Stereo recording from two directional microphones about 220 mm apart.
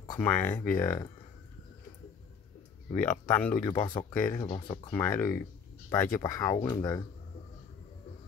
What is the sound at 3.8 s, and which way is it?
Speech, 20° left (ahead or behind).